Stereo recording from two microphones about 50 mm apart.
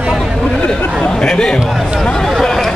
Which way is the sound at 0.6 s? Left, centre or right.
Left.